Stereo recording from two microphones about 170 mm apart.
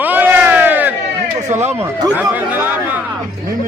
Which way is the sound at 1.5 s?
40° right (ahead or behind).